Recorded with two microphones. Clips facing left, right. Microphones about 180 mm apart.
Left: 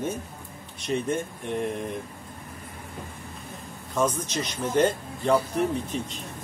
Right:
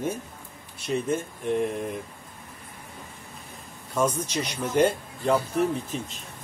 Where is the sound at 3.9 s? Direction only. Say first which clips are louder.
Even; 10° right (ahead or behind).